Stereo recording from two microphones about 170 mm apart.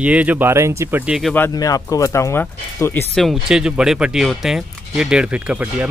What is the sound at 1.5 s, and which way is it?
Speech, 20° left (ahead or behind).